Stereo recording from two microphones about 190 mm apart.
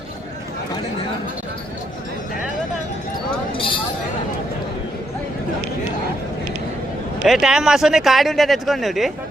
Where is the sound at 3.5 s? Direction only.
25° left (ahead or behind).